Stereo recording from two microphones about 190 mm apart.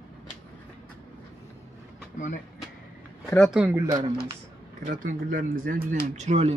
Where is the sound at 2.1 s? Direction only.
40° left (ahead or behind).